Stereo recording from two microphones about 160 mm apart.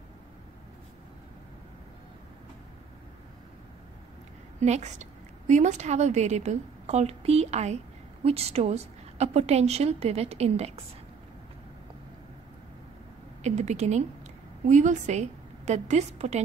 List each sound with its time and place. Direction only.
4.6 s a woman's voice: 45° right (ahead or behind)
13.4 s a woman's voice: 45° right (ahead or behind)